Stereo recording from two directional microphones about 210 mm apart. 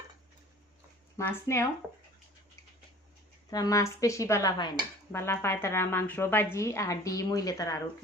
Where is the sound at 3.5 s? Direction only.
15° left (ahead or behind).